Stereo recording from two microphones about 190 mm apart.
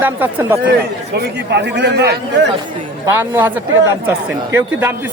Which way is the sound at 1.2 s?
60° right (ahead or behind).